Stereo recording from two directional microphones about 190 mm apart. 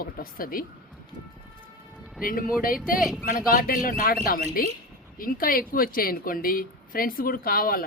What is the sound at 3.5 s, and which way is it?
Speech, 50° left (ahead or behind).